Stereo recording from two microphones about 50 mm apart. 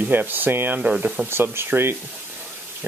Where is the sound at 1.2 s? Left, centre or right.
Right.